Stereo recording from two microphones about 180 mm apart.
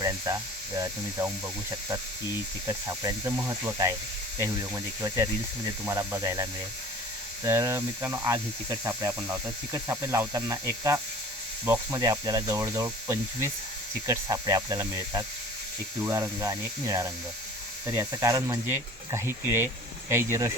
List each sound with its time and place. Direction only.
0.0 s speech: 20° right (ahead or behind)
2.6 s speech: 20° right (ahead or behind)